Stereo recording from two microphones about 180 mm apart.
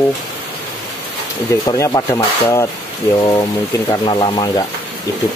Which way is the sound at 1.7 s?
20° left (ahead or behind).